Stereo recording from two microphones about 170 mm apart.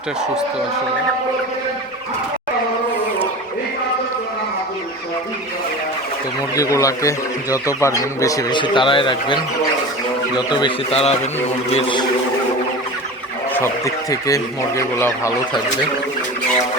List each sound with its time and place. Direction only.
6.6 s a man's voice: 20° left (ahead or behind)
13.5 s speech: 15° left (ahead or behind)